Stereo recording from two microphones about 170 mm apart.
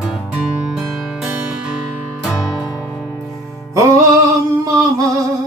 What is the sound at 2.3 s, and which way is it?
Music, 20° left (ahead or behind).